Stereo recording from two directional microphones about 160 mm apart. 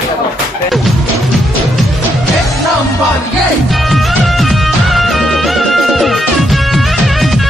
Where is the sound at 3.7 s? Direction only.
Centre (ahead or behind).